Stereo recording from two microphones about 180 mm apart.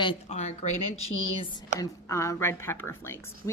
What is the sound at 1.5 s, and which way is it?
A woman's voice, 20° left (ahead or behind).